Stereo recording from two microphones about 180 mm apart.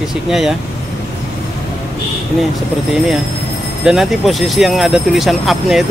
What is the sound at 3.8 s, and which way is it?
Speech, 5° right (ahead or behind).